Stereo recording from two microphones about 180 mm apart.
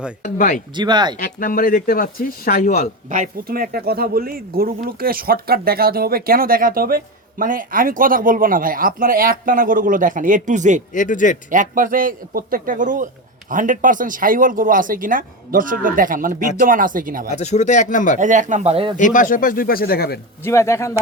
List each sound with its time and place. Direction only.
0.2 s speech: 45° left (ahead or behind)
0.8 s speech: 25° right (ahead or behind)
1.2 s speech: 50° left (ahead or behind)
3.1 s speech: 50° right (ahead or behind)
10.9 s speech: 45° left (ahead or behind)
11.5 s speech: 45° right (ahead or behind)
17.3 s speech: 40° left (ahead or behind)
18.2 s speech: 45° right (ahead or behind)
18.9 s speech: 45° left (ahead or behind)
20.4 s speech: 15° left (ahead or behind)